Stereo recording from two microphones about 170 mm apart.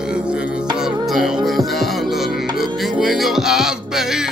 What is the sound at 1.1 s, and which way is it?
Music, centre (ahead or behind).